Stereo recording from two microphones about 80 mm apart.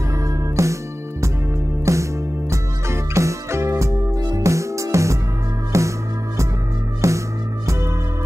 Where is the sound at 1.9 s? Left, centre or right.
Right.